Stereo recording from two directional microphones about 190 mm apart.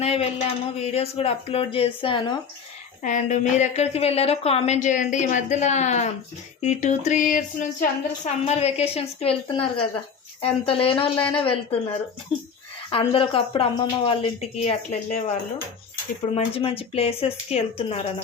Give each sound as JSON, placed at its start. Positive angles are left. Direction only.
{"t": 0.0, "sound": "speech", "side_deg": 30}
{"t": 3.0, "sound": "speech", "side_deg": 40}
{"t": 12.9, "sound": "speech", "side_deg": 30}
{"t": 16.3, "sound": "speech", "side_deg": 30}